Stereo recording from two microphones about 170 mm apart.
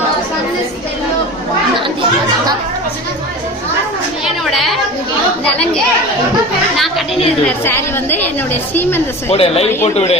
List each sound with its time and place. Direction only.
4.4 s chatter: centre (ahead or behind)
6.7 s chatter: centre (ahead or behind)
7.6 s a woman's voice: 15° left (ahead or behind)
9.3 s speech: 35° left (ahead or behind)